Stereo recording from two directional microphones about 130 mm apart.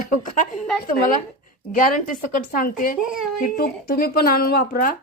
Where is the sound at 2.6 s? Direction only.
90° left.